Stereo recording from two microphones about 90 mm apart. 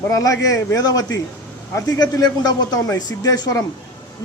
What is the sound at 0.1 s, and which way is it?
A man's voice, 40° left (ahead or behind).